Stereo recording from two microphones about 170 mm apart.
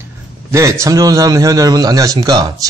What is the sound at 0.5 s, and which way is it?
A man's voice, 15° right (ahead or behind).